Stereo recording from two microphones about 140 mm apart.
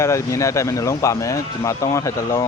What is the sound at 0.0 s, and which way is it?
Speech, 20° left (ahead or behind).